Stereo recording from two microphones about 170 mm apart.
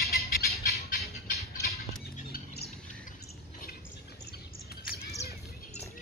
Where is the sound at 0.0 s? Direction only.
65° left (ahead or behind).